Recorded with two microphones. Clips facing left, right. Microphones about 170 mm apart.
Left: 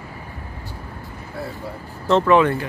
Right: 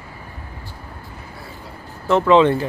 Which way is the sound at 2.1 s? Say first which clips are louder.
Right 2 dB; 15° right (ahead or behind).